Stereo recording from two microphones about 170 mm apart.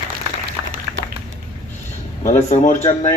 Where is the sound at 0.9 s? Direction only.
20° right (ahead or behind).